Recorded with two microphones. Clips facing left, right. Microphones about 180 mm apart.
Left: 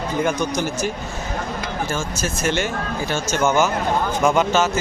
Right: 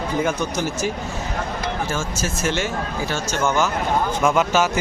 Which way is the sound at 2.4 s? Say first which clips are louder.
Left 2 dB; 55° left (ahead or behind).